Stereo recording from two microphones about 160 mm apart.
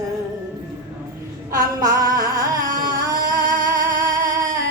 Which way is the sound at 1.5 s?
20° right (ahead or behind).